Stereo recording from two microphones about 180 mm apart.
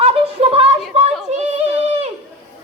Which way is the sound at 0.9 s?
35° right (ahead or behind).